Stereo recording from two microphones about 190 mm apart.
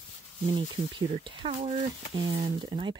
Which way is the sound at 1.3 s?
30° right (ahead or behind).